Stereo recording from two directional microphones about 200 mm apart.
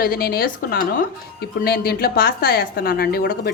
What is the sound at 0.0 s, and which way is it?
Speech, 50° left (ahead or behind).